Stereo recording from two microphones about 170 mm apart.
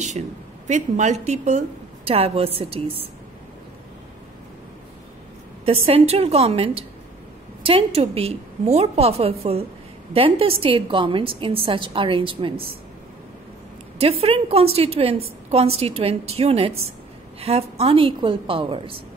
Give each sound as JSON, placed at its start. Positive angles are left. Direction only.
{"t": 0.7, "sound": "a woman's voice", "side_deg": -45}
{"t": 5.7, "sound": "a woman's voice", "side_deg": -35}
{"t": 13.9, "sound": "a woman's voice", "side_deg": -35}